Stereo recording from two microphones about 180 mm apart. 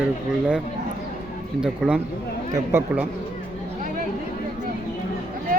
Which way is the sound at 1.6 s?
5° right (ahead or behind).